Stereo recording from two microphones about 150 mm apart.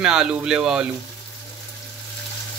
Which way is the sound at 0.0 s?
5° right (ahead or behind).